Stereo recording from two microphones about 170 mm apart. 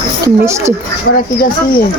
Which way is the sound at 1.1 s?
60° left (ahead or behind).